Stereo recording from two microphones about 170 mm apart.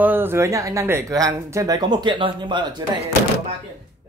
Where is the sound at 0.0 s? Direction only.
10° right (ahead or behind); by 2.7 s 25° right (ahead or behind).